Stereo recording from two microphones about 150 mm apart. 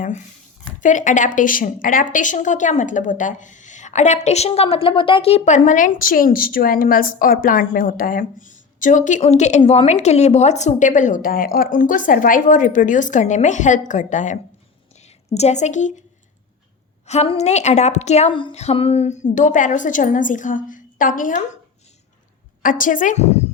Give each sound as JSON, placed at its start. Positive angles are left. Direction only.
{"t": 0.8, "sound": "a woman's voice", "side_deg": 55}
{"t": 17.1, "sound": "a woman's voice", "side_deg": 45}
{"t": 18.3, "sound": "a sound", "side_deg": 30}
{"t": 18.5, "sound": "a woman's voice", "side_deg": 45}
{"t": 22.6, "sound": "a woman's voice", "side_deg": 60}